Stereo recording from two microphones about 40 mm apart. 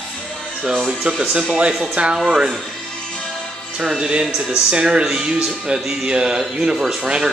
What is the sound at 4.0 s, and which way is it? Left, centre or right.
Speech, right.